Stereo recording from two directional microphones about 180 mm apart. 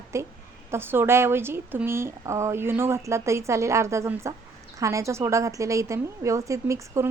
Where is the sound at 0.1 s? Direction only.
15° right (ahead or behind).